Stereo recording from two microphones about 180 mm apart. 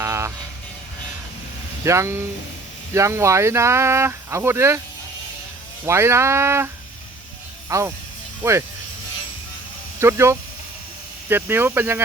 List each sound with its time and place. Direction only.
0.0 s music: 15° right (ahead or behind)
1.8 s speech: 15° right (ahead or behind)
5.8 s speech: 15° right (ahead or behind)
7.7 s speech: 15° right (ahead or behind)
10.0 s speech: 15° right (ahead or behind)